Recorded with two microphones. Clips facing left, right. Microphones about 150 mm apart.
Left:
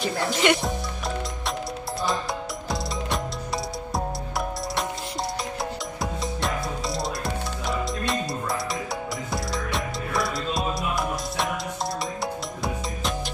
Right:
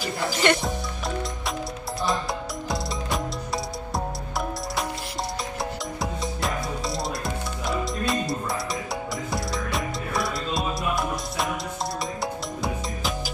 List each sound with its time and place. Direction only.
0.0 s speech: centre (ahead or behind)
5.9 s music: centre (ahead or behind)
12.6 s music: centre (ahead or behind)